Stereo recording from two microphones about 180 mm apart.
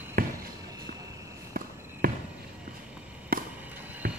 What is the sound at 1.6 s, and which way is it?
Walk, 55° right (ahead or behind).